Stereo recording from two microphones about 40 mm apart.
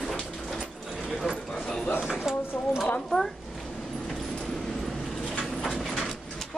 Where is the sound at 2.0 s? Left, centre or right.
Centre.